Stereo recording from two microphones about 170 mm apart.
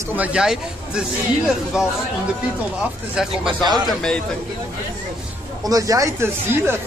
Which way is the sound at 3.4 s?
25° right (ahead or behind).